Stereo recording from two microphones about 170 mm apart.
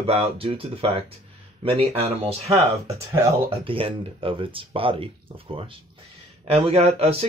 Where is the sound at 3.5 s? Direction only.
30° right (ahead or behind).